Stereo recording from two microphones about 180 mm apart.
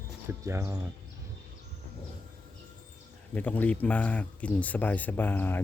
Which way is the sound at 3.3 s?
10° left (ahead or behind).